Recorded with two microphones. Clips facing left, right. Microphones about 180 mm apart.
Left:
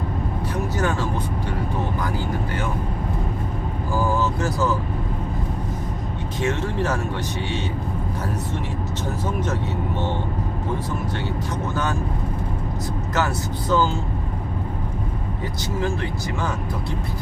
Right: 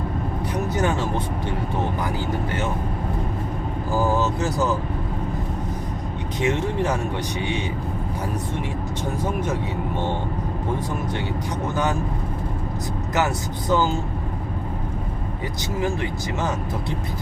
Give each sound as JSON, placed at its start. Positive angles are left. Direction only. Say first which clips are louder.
{"t": 0.5, "sound": "vehicle", "louder": "right 1 dB", "side_deg": -20}
{"t": 3.9, "sound": "speech", "louder": "right 1 dB", "side_deg": -20}
{"t": 6.4, "sound": "speech", "louder": "right 1 dB", "side_deg": -15}
{"t": 13.1, "sound": "speech", "louder": "right 1 dB", "side_deg": -15}
{"t": 15.8, "sound": "speech", "louder": "right 1 dB", "side_deg": -15}